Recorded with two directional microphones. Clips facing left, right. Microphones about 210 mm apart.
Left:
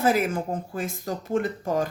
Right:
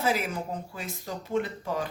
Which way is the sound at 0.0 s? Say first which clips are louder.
Left 6 dB; 50° left (ahead or behind).